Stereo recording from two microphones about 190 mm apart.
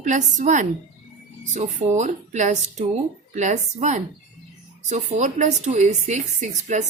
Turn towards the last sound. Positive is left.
turn(degrees=-40)  # may be behind; listen again after turning